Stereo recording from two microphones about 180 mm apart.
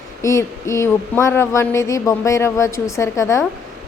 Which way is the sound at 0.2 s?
15° left (ahead or behind).